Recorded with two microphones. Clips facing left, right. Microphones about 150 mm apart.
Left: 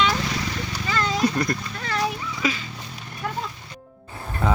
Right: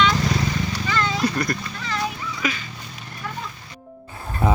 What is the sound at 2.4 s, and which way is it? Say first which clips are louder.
Speech: left 1 dB; 25° left (ahead or behind).